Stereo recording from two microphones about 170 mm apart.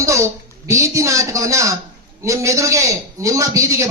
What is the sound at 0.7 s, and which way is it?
A man's voice, 15° right (ahead or behind).